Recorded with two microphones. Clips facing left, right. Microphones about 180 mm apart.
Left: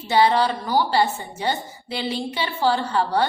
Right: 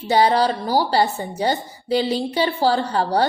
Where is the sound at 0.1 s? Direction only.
40° right (ahead or behind).